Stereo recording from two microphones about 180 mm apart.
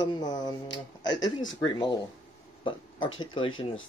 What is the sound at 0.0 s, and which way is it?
Speech, 25° left (ahead or behind).